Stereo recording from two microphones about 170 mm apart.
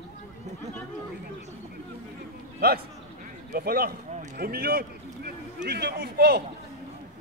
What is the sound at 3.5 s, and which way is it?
A man's voice, 65° right (ahead or behind).